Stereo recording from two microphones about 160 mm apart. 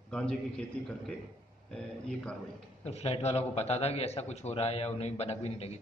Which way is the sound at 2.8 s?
40° left (ahead or behind).